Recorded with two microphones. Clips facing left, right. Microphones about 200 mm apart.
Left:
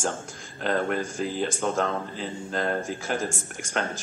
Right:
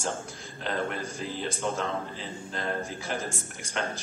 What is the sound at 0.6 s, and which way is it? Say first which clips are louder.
Speech: left 6 dB; 50° left (ahead or behind).